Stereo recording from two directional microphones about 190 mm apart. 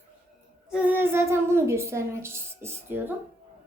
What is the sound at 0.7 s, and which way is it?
Speech, 10° right (ahead or behind).